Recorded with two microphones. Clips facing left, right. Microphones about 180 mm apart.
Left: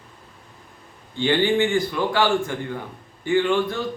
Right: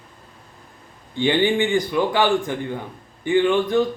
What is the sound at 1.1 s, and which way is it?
Speech, 15° right (ahead or behind).